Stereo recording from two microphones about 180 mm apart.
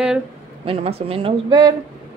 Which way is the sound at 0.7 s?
35° right (ahead or behind).